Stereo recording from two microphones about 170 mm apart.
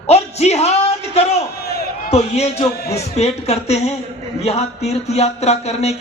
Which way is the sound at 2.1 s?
40° left (ahead or behind).